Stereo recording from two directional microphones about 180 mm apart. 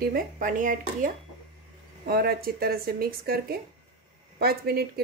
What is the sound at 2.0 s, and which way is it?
Speech, 60° right (ahead or behind).